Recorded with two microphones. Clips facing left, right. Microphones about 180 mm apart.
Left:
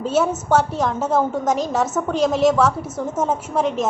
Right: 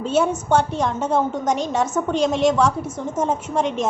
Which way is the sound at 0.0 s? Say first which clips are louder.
Even; 5° left (ahead or behind).